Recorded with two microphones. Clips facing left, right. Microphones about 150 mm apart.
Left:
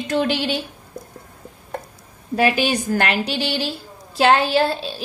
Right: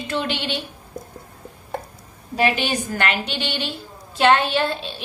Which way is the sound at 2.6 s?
40° left (ahead or behind).